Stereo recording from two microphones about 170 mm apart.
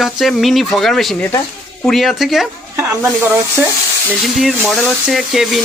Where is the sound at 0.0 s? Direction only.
Centre (ahead or behind).